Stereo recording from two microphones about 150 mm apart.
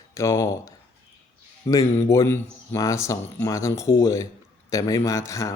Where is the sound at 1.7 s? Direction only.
20° left (ahead or behind).